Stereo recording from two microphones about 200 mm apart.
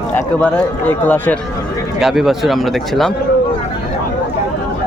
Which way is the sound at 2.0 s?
Centre (ahead or behind).